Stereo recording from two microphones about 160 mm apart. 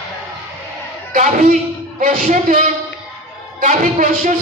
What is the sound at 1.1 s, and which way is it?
Speech, 50° right (ahead or behind).